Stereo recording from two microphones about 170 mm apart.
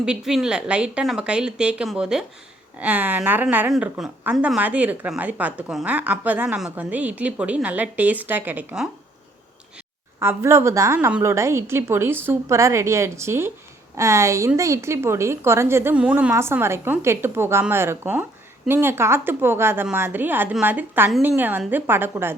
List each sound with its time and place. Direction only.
0.0 s a woman's voice: 5° right (ahead or behind)
10.2 s a woman's voice: 15° right (ahead or behind)